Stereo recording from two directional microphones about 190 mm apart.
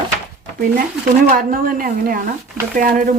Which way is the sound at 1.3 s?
45° right (ahead or behind).